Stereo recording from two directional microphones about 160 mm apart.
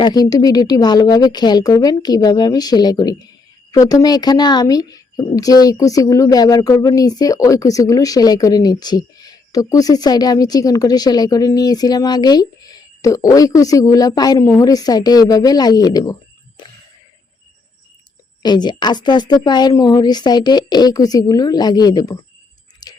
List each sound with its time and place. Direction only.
0.0 s a woman's voice: 25° left (ahead or behind)
16.6 s a sound: 30° left (ahead or behind)
18.4 s a woman's voice: 25° left (ahead or behind)
22.8 s tick-tock: 25° left (ahead or behind)